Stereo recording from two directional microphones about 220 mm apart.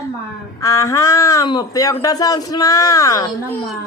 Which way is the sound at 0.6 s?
15° left (ahead or behind).